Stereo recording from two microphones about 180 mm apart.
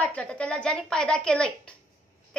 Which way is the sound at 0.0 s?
5° left (ahead or behind).